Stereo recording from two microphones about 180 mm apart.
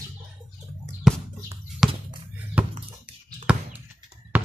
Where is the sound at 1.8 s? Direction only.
Centre (ahead or behind).